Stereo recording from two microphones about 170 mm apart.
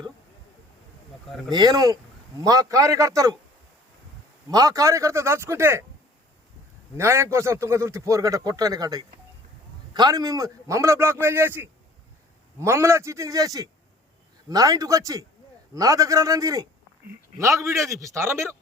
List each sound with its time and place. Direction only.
1.5 s a man's voice: 25° right (ahead or behind)
4.4 s a man's voice: 20° right (ahead or behind)
6.9 s a man's voice: 15° right (ahead or behind)